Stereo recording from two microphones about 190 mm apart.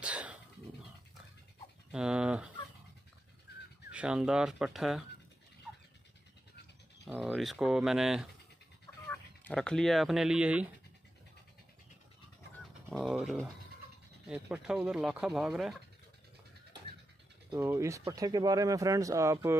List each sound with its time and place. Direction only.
0.0 s dog: 5° right (ahead or behind)
1.9 s speech: 5° right (ahead or behind)
3.9 s speech: 5° right (ahead or behind)
7.2 s speech: centre (ahead or behind)
9.0 s speech: 10° left (ahead or behind)
12.9 s speech: 5° right (ahead or behind)
17.5 s speech: 15° right (ahead or behind)